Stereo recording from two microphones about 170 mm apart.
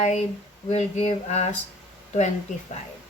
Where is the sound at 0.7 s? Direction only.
40° left (ahead or behind).